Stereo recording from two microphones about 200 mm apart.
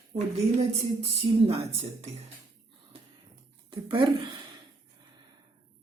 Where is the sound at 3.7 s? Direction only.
25° right (ahead or behind).